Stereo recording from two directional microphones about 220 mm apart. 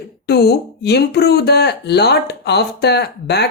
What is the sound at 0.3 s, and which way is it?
Speech, 50° left (ahead or behind).